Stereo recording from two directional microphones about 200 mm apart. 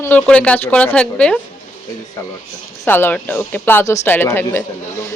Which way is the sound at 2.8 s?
10° left (ahead or behind).